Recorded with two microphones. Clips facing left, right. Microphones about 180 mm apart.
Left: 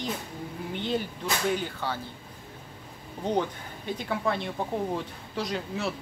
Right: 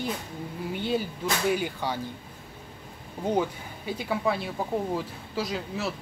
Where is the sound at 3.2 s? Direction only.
10° right (ahead or behind).